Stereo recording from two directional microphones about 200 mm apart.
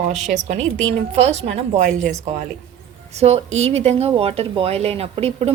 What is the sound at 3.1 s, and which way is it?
Speech, 30° right (ahead or behind).